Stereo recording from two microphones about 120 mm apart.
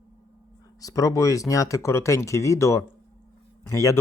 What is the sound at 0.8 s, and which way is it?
A man's voice, 30° left (ahead or behind).